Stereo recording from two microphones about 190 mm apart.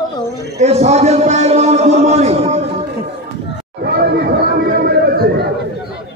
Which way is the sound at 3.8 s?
55° right (ahead or behind).